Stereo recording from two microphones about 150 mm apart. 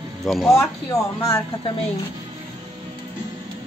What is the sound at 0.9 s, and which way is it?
Speech, 25° left (ahead or behind).